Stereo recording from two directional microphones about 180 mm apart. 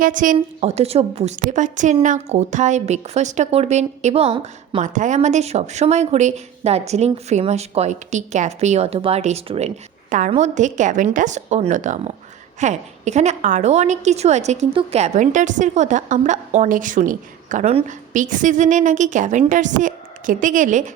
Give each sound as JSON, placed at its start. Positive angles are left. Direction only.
{"t": 0.0, "sound": "a woman's voice", "side_deg": -45}
{"t": 0.3, "sound": "a woman's voice", "side_deg": -35}